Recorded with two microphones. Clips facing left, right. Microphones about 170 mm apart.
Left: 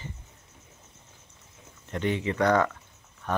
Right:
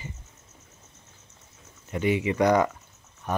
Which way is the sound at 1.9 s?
10° right (ahead or behind).